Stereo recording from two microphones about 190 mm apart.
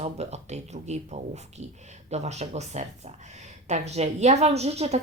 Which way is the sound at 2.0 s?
35° right (ahead or behind).